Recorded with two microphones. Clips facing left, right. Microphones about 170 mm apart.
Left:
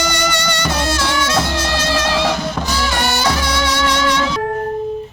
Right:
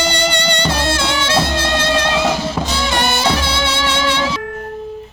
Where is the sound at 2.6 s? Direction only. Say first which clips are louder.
Right 1 dB; 25° right (ahead or behind).